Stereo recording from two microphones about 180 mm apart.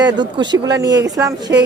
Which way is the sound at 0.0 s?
25° right (ahead or behind).